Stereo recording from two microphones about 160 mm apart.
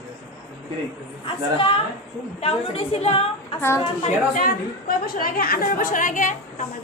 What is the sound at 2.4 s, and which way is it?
Speech, 40° left (ahead or behind).